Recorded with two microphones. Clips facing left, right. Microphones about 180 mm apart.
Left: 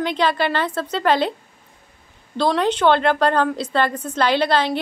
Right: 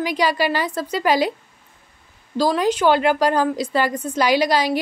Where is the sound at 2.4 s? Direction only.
10° right (ahead or behind).